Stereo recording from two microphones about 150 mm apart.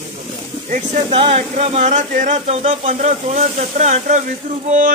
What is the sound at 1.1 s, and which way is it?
Speech, 40° right (ahead or behind).